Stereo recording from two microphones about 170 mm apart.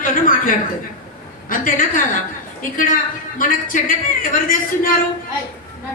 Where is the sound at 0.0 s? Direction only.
55° left (ahead or behind).